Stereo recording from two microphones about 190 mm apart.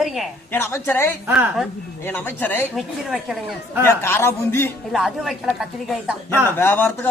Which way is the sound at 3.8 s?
10° left (ahead or behind).